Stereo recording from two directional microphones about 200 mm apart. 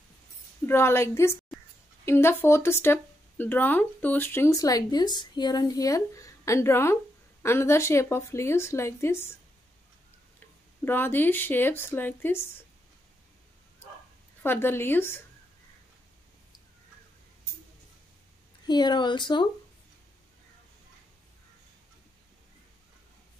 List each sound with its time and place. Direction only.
0.7 s speech: 10° left (ahead or behind)
10.9 s speech: 10° left (ahead or behind)
14.4 s speech: 10° left (ahead or behind)
18.7 s a woman's voice: 20° left (ahead or behind)